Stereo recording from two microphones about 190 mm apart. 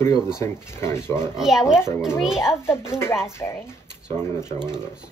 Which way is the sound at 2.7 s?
15° left (ahead or behind).